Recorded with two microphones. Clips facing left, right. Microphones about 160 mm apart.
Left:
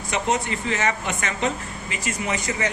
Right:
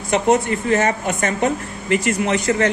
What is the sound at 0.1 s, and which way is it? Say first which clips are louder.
A woman's voice: right 8 dB; 50° right (ahead or behind).